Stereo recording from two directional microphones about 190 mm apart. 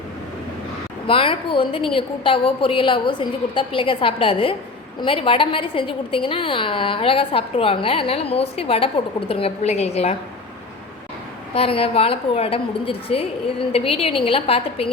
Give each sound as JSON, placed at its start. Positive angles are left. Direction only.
{"t": 1.0, "sound": "a woman's voice", "side_deg": 30}
{"t": 11.5, "sound": "a woman's voice", "side_deg": 30}